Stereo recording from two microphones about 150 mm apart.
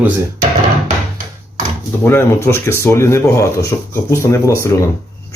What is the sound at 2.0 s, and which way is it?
Speech, 15° left (ahead or behind).